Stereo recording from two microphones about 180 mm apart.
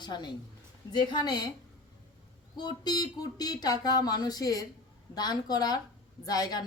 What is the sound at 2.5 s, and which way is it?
Speech, 25° left (ahead or behind).